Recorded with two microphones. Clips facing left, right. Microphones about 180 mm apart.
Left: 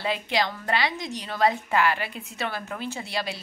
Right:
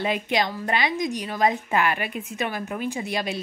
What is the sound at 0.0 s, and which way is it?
Speech, 20° right (ahead or behind).